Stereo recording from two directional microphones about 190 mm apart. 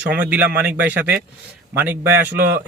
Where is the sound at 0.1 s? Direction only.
10° right (ahead or behind).